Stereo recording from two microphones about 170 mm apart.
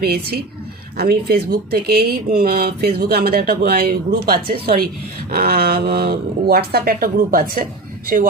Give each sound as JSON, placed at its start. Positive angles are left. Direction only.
{"t": 0.0, "sound": "speech", "side_deg": -65}